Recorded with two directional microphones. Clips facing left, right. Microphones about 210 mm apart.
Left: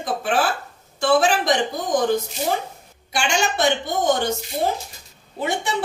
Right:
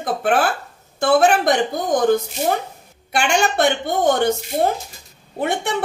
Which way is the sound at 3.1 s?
60° right (ahead or behind).